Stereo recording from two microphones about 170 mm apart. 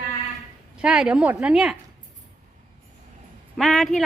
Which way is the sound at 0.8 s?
5° right (ahead or behind).